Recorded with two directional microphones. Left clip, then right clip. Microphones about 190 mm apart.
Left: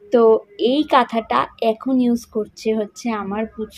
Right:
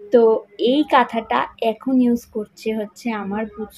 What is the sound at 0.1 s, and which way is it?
A woman's voice, 10° left (ahead or behind).